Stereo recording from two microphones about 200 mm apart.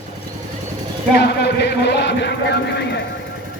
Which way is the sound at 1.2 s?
55° left (ahead or behind).